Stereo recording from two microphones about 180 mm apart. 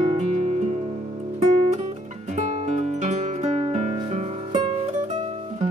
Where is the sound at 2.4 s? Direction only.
40° right (ahead or behind).